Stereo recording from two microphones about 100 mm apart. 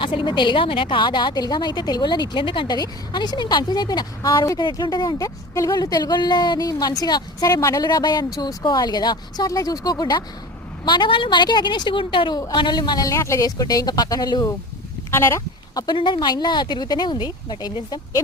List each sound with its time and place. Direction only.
0.0 s a woman's voice: 55° left (ahead or behind)
13.1 s speech: 30° left (ahead or behind)
15.1 s speech: 25° left (ahead or behind)
16.0 s a woman's voice: 55° left (ahead or behind)